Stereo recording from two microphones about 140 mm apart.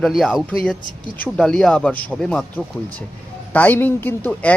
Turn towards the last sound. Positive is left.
turn(degrees=10)  # may be behind; listen again after turning